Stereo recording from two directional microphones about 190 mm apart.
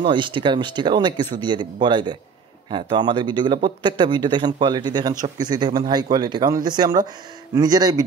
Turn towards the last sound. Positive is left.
turn(degrees=-20)  # may be behind; listen again after turning